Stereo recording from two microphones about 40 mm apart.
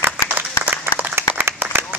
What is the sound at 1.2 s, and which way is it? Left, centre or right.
Applause, right.